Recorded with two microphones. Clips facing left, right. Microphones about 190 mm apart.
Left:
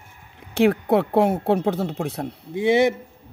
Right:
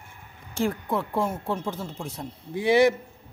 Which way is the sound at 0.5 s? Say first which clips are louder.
Left 9 dB; 70° left (ahead or behind).